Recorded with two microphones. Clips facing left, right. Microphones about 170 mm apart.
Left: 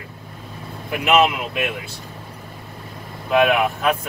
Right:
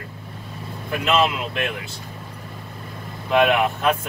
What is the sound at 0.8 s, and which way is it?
Speech, 15° left (ahead or behind).